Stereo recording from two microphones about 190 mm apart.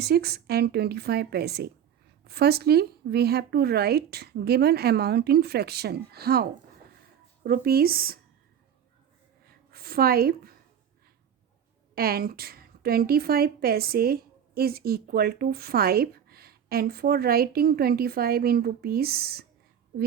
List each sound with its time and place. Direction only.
0.0 s a woman's voice: 55° right (ahead or behind)
9.5 s a sound: 50° right (ahead or behind)
11.9 s a woman's voice: 55° right (ahead or behind)